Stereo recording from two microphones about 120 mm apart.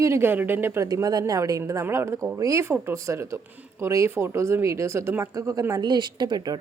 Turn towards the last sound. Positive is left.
turn(degrees=-35)  # may be behind; listen again after turning